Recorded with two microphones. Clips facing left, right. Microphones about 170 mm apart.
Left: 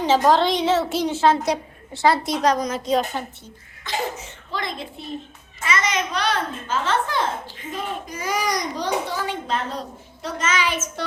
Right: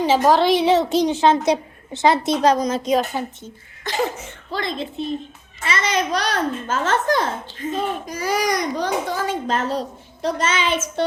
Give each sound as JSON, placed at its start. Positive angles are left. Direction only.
{"t": 0.0, "sound": "a woman's voice", "side_deg": -10}
{"t": 3.1, "sound": "speech", "side_deg": -10}
{"t": 4.5, "sound": "a woman's voice", "side_deg": -30}
{"t": 8.4, "sound": "a child's voice", "side_deg": -45}